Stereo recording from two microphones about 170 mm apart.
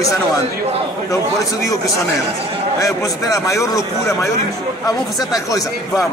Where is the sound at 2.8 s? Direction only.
20° left (ahead or behind).